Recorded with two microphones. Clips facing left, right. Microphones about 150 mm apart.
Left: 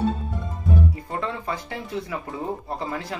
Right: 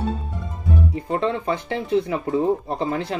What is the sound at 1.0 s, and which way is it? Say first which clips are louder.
Speech: right 7 dB; 25° right (ahead or behind).